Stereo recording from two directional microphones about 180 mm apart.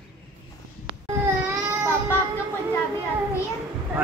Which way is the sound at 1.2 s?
10° right (ahead or behind).